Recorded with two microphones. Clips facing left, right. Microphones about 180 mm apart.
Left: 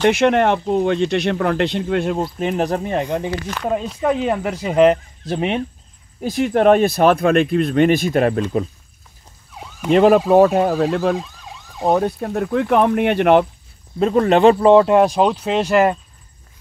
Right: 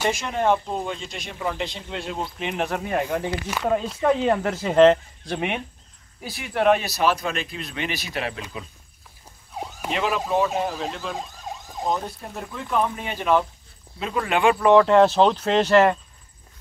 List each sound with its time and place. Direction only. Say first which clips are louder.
0.0 s speech: left 9 dB; 70° left (ahead or behind); by 2.2 s 55° left (ahead or behind)
2.3 s speech: left 7 dB; 40° left (ahead or behind)
3.6 s speech: left 1 dB; 5° left (ahead or behind)
5.2 s speech: left 6 dB; 20° left (ahead or behind)
6.2 s speech: left 7 dB; 45° left (ahead or behind)
9.8 s speech: left 13 dB; 45° left (ahead or behind)
11.2 s emergency vehicle: right 3 dB; 45° right (ahead or behind)
11.8 s speech: left 10 dB; 65° left (ahead or behind)
13.9 s speech: left 10 dB; 45° left (ahead or behind)
14.6 s speech: left 3 dB; 20° left (ahead or behind)